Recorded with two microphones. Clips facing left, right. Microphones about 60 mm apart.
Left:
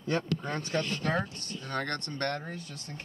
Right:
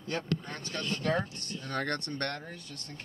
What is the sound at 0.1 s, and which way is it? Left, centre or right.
Speech, left.